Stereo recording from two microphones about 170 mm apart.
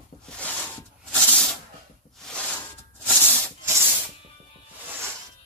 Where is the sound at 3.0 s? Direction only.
10° left (ahead or behind).